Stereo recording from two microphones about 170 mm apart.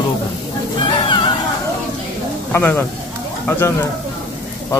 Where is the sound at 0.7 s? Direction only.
30° left (ahead or behind).